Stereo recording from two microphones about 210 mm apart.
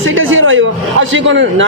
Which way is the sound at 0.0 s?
70° right (ahead or behind).